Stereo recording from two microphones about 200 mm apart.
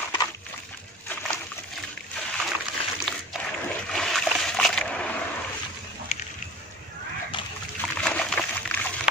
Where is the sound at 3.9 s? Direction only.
Centre (ahead or behind).